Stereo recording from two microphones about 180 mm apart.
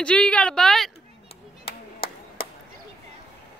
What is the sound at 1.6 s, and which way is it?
Clapping, 30° left (ahead or behind).